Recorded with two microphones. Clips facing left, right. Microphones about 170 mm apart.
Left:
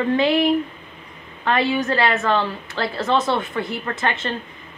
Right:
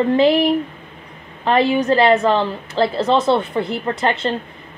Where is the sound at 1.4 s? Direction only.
30° right (ahead or behind).